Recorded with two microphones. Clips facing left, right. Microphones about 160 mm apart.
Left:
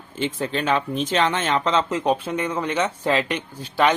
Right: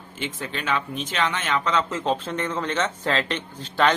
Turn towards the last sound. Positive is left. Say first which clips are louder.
# left 2 dB
turn(degrees=10)  # may be behind; listen again after turning